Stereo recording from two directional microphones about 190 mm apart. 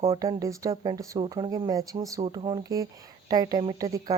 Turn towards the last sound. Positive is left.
turn(degrees=-20)  # may be behind; listen again after turning